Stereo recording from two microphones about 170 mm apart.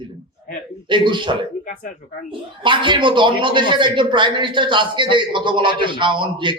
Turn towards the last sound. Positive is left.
turn(degrees=-30)  # may be behind; listen again after turning